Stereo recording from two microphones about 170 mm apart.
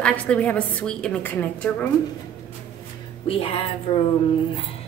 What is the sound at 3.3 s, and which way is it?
Speech, 35° left (ahead or behind).